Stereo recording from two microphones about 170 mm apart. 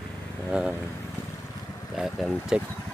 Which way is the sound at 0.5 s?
5° right (ahead or behind).